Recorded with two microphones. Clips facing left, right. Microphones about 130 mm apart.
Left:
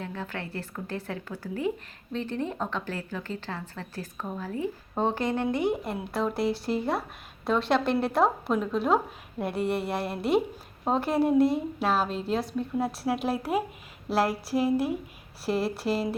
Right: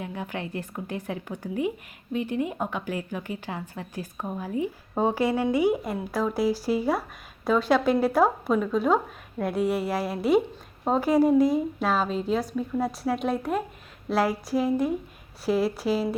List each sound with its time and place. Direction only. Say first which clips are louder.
0.0 s a woman's voice: right 2 dB; 15° right (ahead or behind); by 16.0 s centre (ahead or behind)